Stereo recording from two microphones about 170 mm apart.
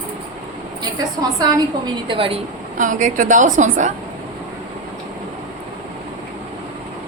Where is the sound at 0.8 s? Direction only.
20° right (ahead or behind).